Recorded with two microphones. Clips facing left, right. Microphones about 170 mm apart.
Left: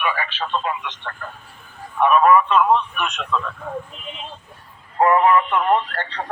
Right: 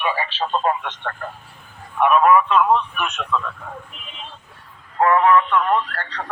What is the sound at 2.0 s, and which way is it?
Speech, centre (ahead or behind).